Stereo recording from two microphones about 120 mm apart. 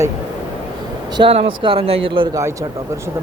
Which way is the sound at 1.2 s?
50° right (ahead or behind).